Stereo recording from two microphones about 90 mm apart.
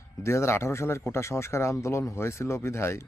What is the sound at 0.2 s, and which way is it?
Speech, 30° left (ahead or behind).